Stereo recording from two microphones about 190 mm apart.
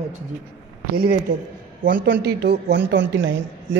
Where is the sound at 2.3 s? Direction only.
55° right (ahead or behind).